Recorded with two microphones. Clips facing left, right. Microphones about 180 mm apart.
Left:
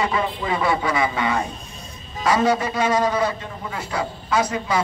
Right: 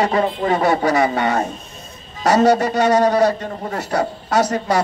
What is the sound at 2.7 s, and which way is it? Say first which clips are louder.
Speech: right 5 dB; 70° right (ahead or behind).